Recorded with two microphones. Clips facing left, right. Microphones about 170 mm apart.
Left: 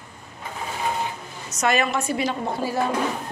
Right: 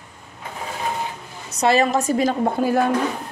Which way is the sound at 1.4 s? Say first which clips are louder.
Right 5 dB; 30° right (ahead or behind).